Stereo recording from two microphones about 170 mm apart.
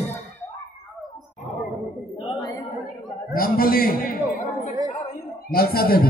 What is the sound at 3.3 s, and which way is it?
Speech, 60° left (ahead or behind).